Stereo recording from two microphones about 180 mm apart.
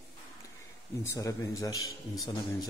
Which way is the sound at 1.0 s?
15° left (ahead or behind).